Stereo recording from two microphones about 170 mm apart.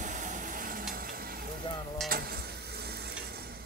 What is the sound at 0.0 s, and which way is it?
Vehicle, 50° right (ahead or behind).